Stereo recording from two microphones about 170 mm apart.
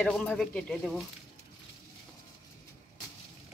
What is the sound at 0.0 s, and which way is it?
Speech, 5° left (ahead or behind).